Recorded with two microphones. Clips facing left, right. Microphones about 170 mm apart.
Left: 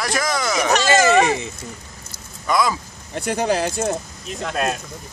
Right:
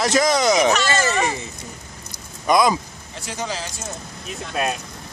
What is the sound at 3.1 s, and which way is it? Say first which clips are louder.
Speech: left 9 dB; 60° left (ahead or behind).